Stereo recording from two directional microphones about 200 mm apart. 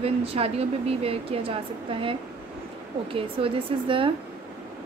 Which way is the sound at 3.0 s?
25° right (ahead or behind).